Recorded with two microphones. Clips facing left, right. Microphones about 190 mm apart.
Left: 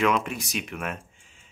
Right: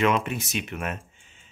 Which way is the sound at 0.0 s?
Centre (ahead or behind).